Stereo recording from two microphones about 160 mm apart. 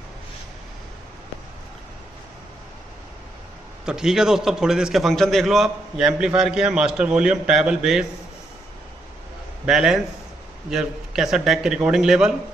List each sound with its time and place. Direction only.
3.8 s a man's voice: 5° right (ahead or behind)
9.7 s a man's voice: 5° right (ahead or behind)